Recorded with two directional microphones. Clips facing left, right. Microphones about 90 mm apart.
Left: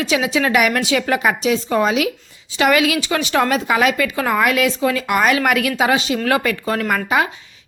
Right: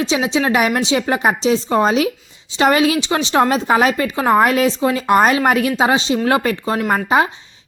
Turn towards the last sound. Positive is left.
turn(degrees=-30)  # may be behind; listen again after turning